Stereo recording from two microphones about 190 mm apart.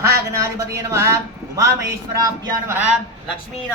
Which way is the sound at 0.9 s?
15° right (ahead or behind).